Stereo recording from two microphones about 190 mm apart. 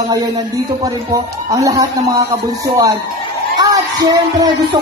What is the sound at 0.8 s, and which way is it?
Speech, 15° right (ahead or behind).